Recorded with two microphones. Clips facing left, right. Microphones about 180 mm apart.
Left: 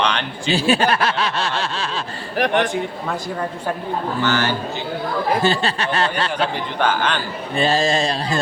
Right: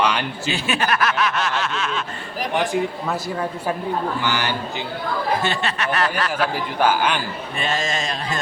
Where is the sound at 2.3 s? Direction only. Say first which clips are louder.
Left 5 dB; 70° left (ahead or behind).